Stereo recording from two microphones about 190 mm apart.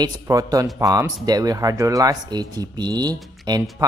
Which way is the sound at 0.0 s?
20° right (ahead or behind).